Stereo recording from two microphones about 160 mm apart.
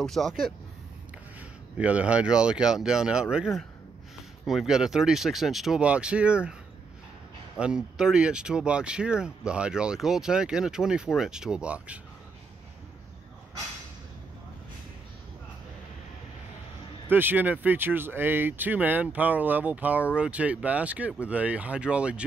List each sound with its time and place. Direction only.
0.0 s speech: centre (ahead or behind)
1.8 s speech: 10° right (ahead or behind)
4.5 s speech: centre (ahead or behind)
7.5 s speech: 5° right (ahead or behind)
17.1 s speech: 10° right (ahead or behind)